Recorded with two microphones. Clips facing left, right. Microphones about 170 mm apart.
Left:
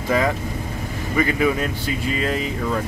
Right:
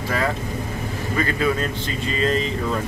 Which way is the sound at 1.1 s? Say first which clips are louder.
Left 3 dB; 15° left (ahead or behind).